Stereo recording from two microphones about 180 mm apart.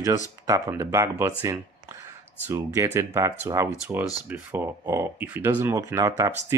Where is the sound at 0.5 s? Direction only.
15° right (ahead or behind).